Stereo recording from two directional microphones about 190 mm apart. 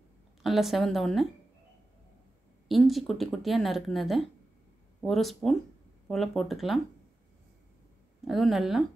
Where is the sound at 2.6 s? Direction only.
Centre (ahead or behind).